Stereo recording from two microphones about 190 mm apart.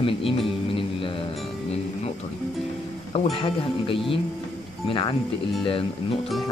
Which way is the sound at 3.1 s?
30° left (ahead or behind).